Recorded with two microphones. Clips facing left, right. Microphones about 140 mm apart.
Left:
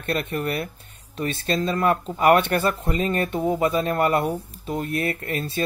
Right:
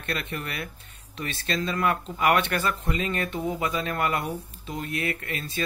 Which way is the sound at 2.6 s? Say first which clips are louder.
Left 5 dB; 50° left (ahead or behind).